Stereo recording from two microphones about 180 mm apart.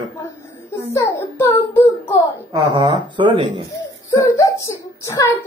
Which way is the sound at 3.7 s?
20° left (ahead or behind).